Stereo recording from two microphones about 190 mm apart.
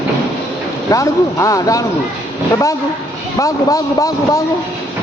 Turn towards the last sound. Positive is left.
turn(degrees=15)  # may be behind; listen again after turning